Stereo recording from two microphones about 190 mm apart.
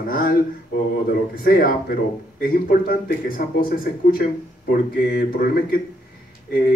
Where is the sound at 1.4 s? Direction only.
50° left (ahead or behind).